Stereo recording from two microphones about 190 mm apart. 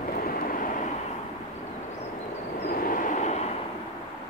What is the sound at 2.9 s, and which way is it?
Vehicle, 45° left (ahead or behind).